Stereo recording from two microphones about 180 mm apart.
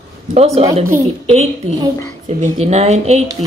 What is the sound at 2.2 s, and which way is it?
Speech, 40° right (ahead or behind).